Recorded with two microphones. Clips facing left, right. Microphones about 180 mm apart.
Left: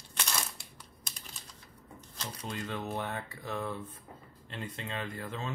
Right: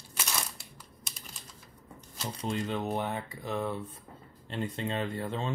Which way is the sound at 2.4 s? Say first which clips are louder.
Right 6 dB; 25° right (ahead or behind).